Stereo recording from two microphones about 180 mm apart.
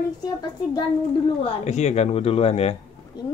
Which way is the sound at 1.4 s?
35° left (ahead or behind).